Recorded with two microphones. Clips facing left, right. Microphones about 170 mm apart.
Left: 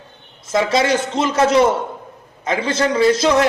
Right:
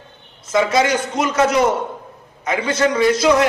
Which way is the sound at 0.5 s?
30° left (ahead or behind).